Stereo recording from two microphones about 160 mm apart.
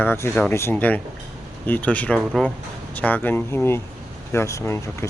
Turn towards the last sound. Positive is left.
turn(degrees=15)  # may be behind; listen again after turning